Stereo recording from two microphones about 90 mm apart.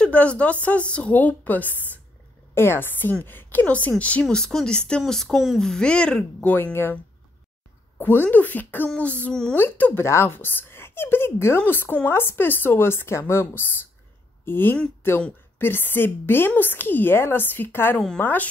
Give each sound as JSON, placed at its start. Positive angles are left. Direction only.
{"t": 0.0, "sound": "a woman's voice", "side_deg": 15}
{"t": 6.5, "sound": "a woman's voice", "side_deg": 25}
{"t": 8.0, "sound": "speech", "side_deg": 25}
{"t": 9.6, "sound": "a woman's voice", "side_deg": 20}